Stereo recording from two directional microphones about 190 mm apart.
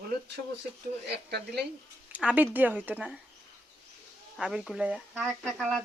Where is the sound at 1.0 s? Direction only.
60° right (ahead or behind).